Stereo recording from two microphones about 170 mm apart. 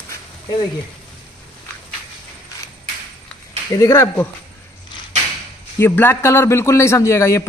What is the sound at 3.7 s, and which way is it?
Speech, 20° left (ahead or behind).